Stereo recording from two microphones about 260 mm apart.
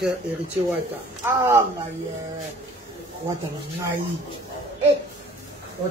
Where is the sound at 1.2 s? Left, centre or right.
Centre.